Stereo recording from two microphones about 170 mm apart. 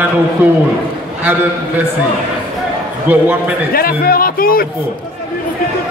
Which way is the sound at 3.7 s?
60° left (ahead or behind).